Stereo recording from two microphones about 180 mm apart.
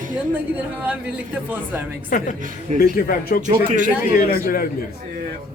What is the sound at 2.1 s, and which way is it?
A man's voice, 50° left (ahead or behind).